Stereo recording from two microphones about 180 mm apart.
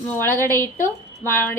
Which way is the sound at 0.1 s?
10° left (ahead or behind).